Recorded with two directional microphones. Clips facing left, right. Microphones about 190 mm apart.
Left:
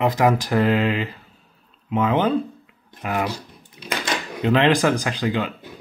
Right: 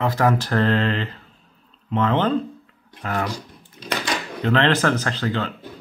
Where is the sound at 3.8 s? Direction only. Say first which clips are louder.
Right 1 dB; 15° left (ahead or behind).